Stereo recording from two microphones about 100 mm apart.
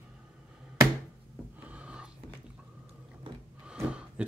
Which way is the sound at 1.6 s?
15° right (ahead or behind).